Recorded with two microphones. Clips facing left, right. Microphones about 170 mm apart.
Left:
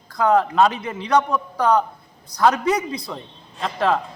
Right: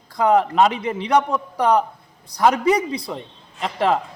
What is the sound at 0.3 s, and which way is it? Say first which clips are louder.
Speech: right 1 dB; 15° right (ahead or behind).